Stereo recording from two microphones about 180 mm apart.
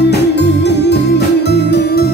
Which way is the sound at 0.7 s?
70° left (ahead or behind).